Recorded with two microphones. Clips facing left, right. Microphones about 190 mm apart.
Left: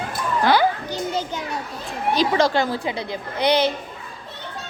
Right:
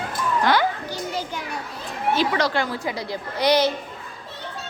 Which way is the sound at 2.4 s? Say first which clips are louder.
Left 3 dB; 40° left (ahead or behind).